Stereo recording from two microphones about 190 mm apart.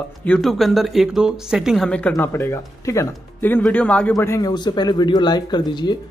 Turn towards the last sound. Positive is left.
turn(degrees=25)  # may be behind; listen again after turning